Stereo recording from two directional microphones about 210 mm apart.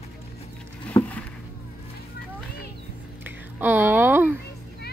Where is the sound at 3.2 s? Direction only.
10° right (ahead or behind).